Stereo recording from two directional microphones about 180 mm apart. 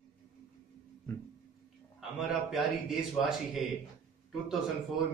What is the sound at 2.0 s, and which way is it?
A man's voice, centre (ahead or behind).